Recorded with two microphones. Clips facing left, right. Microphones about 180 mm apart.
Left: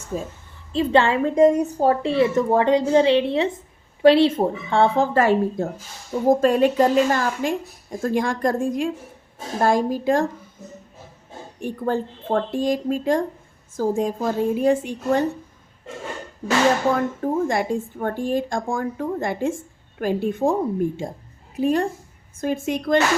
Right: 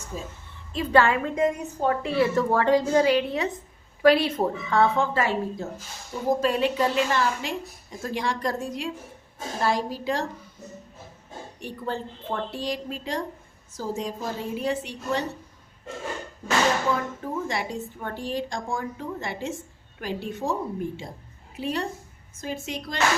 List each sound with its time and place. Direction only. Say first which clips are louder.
0.7 s a woman's voice: left 3 dB; 25° left (ahead or behind)
5.1 s a woman's voice: left 7 dB; 50° left (ahead or behind)
11.6 s a woman's voice: left 8 dB; 50° left (ahead or behind)
17.2 s a woman's voice: left 10 dB; 50° left (ahead or behind)